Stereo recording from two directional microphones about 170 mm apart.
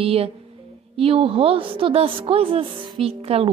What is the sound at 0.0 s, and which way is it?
A woman's voice, 35° right (ahead or behind).